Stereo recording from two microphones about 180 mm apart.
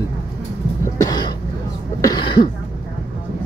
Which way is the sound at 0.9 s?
20° left (ahead or behind).